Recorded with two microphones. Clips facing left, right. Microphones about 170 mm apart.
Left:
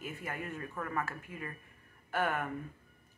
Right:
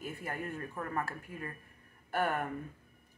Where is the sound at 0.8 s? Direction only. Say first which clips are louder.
Left 1 dB; 15° right (ahead or behind).